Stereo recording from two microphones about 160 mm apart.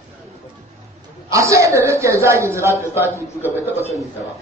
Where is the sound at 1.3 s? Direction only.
20° right (ahead or behind).